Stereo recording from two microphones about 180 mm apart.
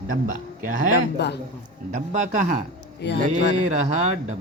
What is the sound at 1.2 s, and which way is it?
Speech, 70° left (ahead or behind).